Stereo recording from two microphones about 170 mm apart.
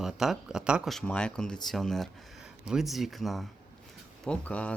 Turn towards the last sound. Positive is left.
turn(degrees=10)  # may be behind; listen again after turning